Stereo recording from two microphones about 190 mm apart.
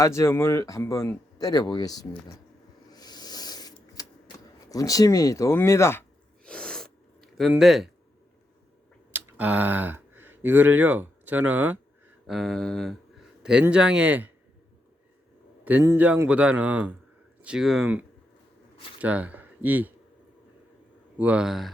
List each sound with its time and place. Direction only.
0.0 s speech: 15° left (ahead or behind)
2.9 s a sound: 20° left (ahead or behind); by 7.9 s centre (ahead or behind)
9.1 s speech: 10° right (ahead or behind)
15.6 s a man's voice: 10° right (ahead or behind)
21.2 s speech: 5° right (ahead or behind)